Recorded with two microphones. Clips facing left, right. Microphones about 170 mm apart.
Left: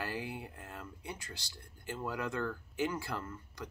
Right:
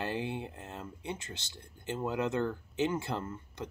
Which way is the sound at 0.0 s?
25° right (ahead or behind).